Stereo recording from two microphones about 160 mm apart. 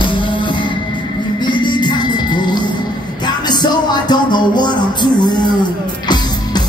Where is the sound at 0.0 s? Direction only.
30° left (ahead or behind).